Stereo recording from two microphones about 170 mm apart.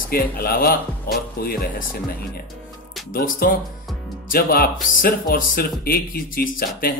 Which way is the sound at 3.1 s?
60° left (ahead or behind).